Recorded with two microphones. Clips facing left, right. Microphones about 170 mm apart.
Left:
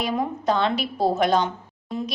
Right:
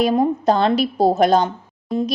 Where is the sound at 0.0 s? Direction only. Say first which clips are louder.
Right 8 dB; 40° right (ahead or behind).